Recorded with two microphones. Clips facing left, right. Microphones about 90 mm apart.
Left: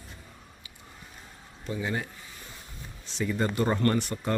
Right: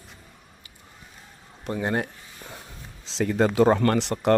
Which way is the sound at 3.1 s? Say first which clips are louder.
Right 6 dB; 90° right.